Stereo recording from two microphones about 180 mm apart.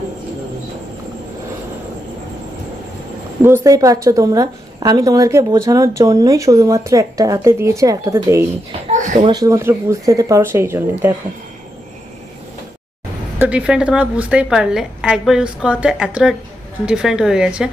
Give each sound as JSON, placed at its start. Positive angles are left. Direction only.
{"t": 3.4, "sound": "a woman's voice", "side_deg": -15}
{"t": 8.9, "sound": "a sound", "side_deg": -45}
{"t": 9.2, "sound": "a woman's voice", "side_deg": -20}
{"t": 13.4, "sound": "a woman's voice", "side_deg": -5}